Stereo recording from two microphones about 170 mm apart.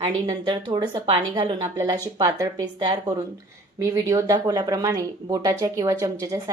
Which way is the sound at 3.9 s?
20° right (ahead or behind).